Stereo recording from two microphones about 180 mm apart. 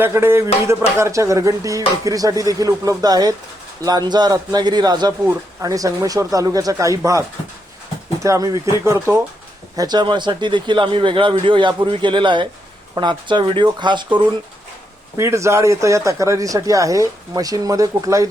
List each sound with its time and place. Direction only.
0.0 s speech: 15° right (ahead or behind)
15.2 s speech: 15° right (ahead or behind)